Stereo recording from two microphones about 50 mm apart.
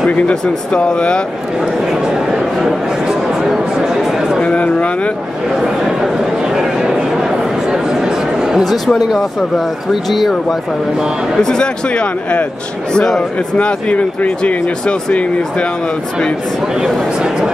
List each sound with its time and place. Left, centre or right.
0.3 s speech: centre
1.6 s a sound: centre
4.4 s speech: left
5.5 s a sound: centre
8.6 s speech: centre
11.4 s speech: centre
12.9 s speech: centre
13.6 s speech: left